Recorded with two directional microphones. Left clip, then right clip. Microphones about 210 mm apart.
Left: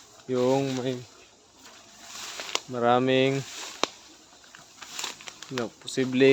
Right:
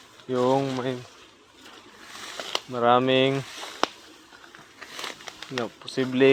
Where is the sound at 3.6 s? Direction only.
35° right (ahead or behind).